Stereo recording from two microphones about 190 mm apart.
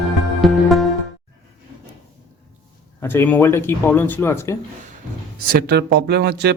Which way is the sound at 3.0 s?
10° left (ahead or behind).